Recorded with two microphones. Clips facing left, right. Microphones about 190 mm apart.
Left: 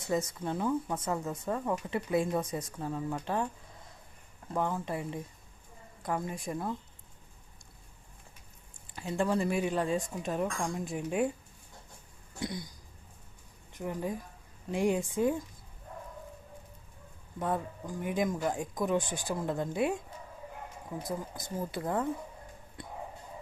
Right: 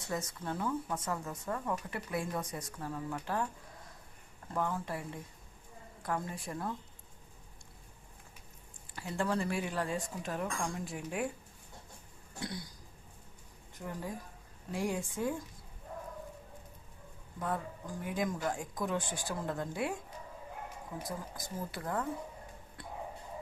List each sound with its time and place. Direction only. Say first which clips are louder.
0.1 s speech: left 6 dB; 20° left (ahead or behind)
4.5 s speech: left 3 dB; 20° left (ahead or behind)
9.0 s speech: left 4 dB; 20° left (ahead or behind)
12.4 s speech: left 4 dB; 15° left (ahead or behind)
13.7 s speech: left 6 dB; 20° left (ahead or behind)
17.4 s speech: left 4 dB; 20° left (ahead or behind)
21.1 s speech: left 7 dB; 20° left (ahead or behind)